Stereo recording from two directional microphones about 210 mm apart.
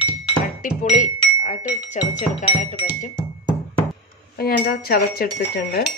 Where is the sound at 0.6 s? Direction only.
35° left (ahead or behind).